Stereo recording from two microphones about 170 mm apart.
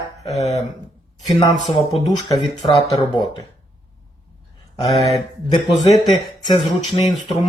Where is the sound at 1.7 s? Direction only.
30° left (ahead or behind).